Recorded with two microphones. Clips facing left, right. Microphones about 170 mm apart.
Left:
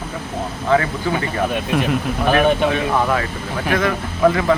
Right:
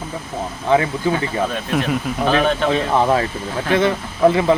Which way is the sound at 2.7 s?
25° right (ahead or behind).